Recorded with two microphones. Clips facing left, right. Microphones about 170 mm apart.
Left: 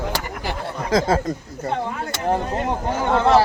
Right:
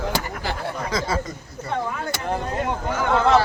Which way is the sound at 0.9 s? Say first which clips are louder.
Left 9 dB; 50° left (ahead or behind).